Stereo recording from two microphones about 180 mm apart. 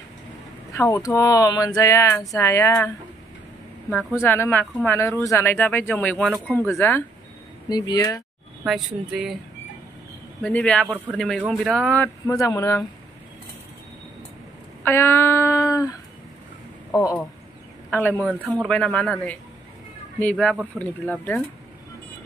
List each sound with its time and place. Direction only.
0.7 s speech: 15° left (ahead or behind)
4.1 s speech: 15° left (ahead or behind)
8.6 s speech: centre (ahead or behind)
10.4 s speech: 5° left (ahead or behind)
12.3 s speech: 20° left (ahead or behind)
14.8 s speech: 15° left (ahead or behind)
16.9 s speech: 15° left (ahead or behind)